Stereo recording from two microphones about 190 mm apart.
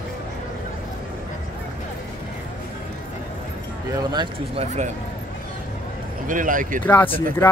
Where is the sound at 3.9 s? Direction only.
20° right (ahead or behind).